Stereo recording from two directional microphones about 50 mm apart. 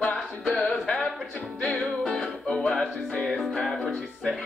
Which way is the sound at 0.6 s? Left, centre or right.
Centre.